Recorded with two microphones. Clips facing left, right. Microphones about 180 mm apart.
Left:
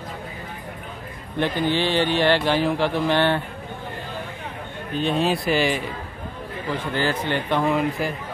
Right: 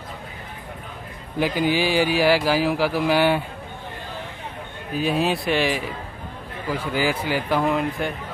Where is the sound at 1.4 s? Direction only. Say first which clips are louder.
Right 1 dB; 10° right (ahead or behind).